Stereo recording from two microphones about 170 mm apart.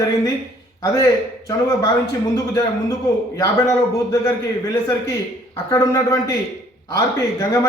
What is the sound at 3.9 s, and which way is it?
A man's voice, 20° left (ahead or behind).